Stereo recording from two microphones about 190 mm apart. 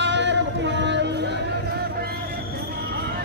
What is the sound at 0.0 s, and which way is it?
Music, 70° right (ahead or behind).